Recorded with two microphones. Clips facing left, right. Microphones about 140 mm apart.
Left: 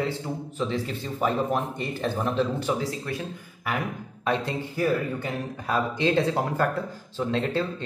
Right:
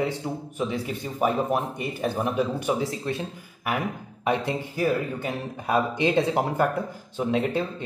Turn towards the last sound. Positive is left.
turn(degrees=-15)  # may be behind; listen again after turning